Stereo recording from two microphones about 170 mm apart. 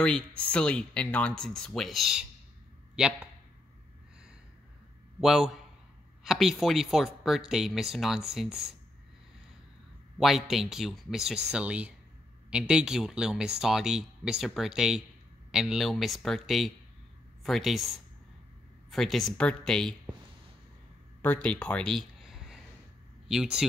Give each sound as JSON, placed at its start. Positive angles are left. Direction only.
{"t": 0.0, "sound": "speech", "side_deg": 5}
{"t": 5.2, "sound": "speech", "side_deg": 0}
{"t": 10.1, "sound": "a man's voice", "side_deg": 0}
{"t": 21.2, "sound": "a sound", "side_deg": 10}
{"t": 23.2, "sound": "speech", "side_deg": -5}